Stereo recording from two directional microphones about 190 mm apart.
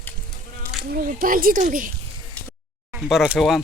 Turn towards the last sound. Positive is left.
turn(degrees=0)  # may be behind; listen again after turning